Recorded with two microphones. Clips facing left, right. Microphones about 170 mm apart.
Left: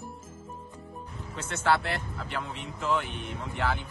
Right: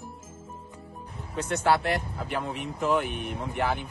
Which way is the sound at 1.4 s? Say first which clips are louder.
Right 3 dB; 15° right (ahead or behind).